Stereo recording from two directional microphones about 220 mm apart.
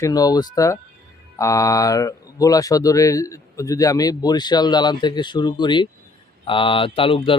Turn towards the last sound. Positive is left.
turn(degrees=25)  # may be behind; listen again after turning